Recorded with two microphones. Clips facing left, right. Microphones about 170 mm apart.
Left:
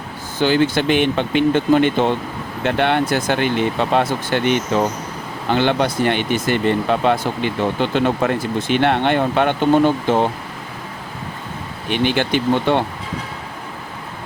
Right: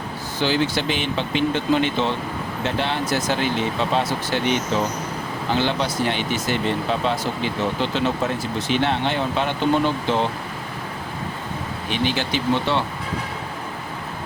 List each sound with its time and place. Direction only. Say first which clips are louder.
0.3 s speech: left 5 dB; 50° left (ahead or behind)
11.9 s speech: left 6 dB; 60° left (ahead or behind)